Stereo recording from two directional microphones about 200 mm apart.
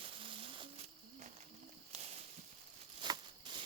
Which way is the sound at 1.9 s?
35° right (ahead or behind).